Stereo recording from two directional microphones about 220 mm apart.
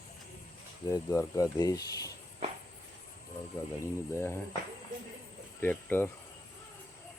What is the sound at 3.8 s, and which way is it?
Speech, 10° left (ahead or behind).